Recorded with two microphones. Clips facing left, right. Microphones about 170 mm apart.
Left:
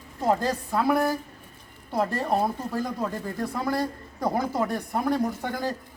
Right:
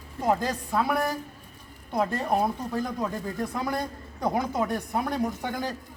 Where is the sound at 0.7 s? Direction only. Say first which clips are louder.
Left 3 dB; centre (ahead or behind).